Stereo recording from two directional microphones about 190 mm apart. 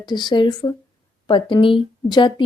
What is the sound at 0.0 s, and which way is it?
A woman's voice, 25° left (ahead or behind).